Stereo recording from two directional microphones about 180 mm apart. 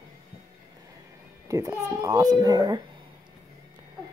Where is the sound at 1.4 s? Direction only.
20° right (ahead or behind).